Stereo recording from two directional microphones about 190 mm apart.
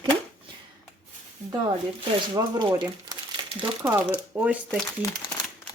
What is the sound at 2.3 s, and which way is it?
Speech, 25° right (ahead or behind).